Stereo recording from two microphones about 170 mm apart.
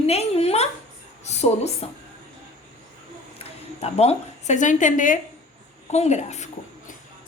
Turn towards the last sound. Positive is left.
turn(degrees=40)  # may be behind; listen again after turning